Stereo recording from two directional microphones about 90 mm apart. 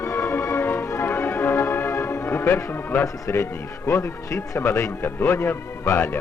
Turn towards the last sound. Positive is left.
turn(degrees=30)  # may be behind; listen again after turning